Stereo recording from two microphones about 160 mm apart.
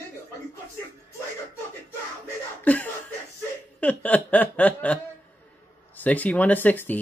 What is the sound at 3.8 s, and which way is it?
Speech, 10° left (ahead or behind).